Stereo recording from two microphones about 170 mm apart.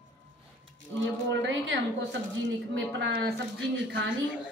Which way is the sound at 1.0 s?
90° right.